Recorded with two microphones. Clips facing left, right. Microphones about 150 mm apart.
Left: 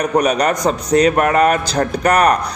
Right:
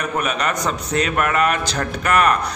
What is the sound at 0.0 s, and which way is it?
A man's voice, 40° left (ahead or behind).